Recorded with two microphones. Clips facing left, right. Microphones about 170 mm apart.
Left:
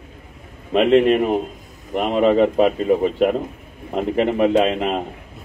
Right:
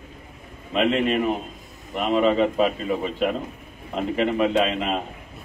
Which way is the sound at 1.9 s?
55° left (ahead or behind).